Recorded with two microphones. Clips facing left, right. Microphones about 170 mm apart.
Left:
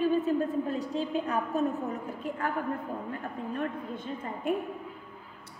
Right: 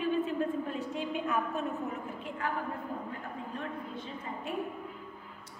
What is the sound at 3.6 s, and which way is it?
Speech, 50° left (ahead or behind).